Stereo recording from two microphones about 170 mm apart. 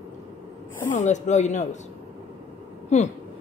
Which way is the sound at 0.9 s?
45° left (ahead or behind).